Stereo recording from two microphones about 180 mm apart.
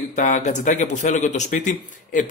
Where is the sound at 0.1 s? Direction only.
45° left (ahead or behind).